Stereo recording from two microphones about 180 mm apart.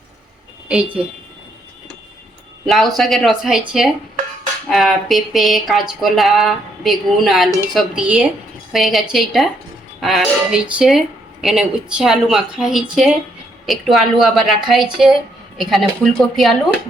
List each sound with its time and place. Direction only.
2.6 s speech: centre (ahead or behind)